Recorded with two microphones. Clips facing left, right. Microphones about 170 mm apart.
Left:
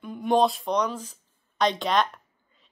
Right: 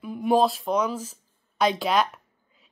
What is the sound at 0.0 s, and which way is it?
A woman's voice, 5° right (ahead or behind).